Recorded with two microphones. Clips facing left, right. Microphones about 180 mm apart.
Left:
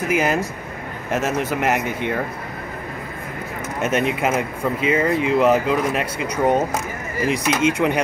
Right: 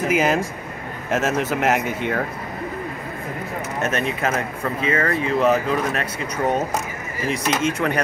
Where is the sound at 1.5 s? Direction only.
5° right (ahead or behind).